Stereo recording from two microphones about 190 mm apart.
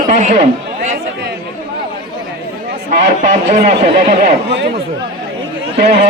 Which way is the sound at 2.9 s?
40° right (ahead or behind).